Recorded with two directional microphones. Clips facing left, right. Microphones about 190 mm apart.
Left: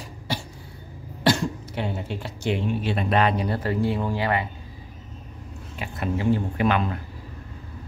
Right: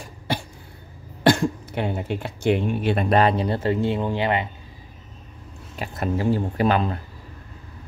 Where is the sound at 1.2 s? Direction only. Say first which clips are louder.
Right 4 dB; 55° right (ahead or behind).